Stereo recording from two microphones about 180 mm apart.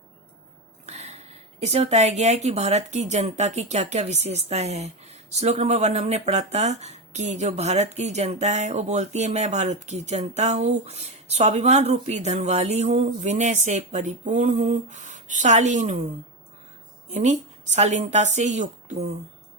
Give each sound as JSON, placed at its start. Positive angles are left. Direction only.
{"t": 0.9, "sound": "speech", "side_deg": -40}
{"t": 17.1, "sound": "speech", "side_deg": -40}